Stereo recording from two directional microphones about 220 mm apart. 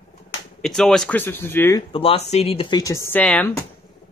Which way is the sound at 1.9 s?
25° left (ahead or behind).